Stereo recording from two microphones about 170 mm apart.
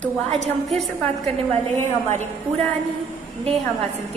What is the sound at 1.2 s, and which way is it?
A man's voice, 35° right (ahead or behind).